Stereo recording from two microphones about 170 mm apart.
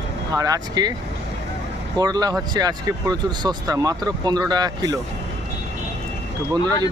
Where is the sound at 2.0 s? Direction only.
20° right (ahead or behind).